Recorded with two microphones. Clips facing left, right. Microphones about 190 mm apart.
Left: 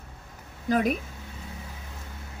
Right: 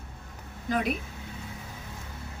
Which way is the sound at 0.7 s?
45° left (ahead or behind).